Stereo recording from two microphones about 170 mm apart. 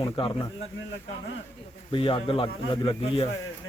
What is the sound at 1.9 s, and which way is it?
Speech, 30° left (ahead or behind).